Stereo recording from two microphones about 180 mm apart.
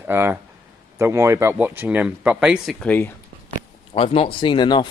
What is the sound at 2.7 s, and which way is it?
Speech, 10° left (ahead or behind).